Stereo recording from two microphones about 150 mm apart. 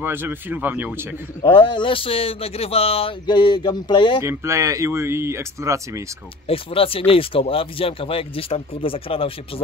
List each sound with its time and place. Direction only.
0.0 s speech: 15° right (ahead or behind)
1.4 s speech: 35° left (ahead or behind)
4.2 s speech: 15° right (ahead or behind)
6.4 s speech: 40° left (ahead or behind)